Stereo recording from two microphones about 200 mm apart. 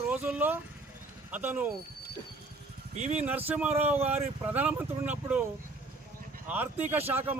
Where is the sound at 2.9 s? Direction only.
35° right (ahead or behind).